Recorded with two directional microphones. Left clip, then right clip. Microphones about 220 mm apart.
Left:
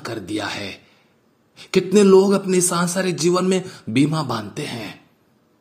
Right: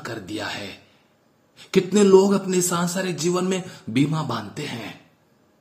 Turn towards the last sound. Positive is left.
turn(degrees=20)  # may be behind; listen again after turning